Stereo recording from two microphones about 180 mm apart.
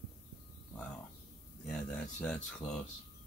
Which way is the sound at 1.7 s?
5° left (ahead or behind).